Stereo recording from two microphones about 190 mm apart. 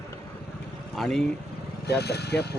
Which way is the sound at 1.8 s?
60° left (ahead or behind).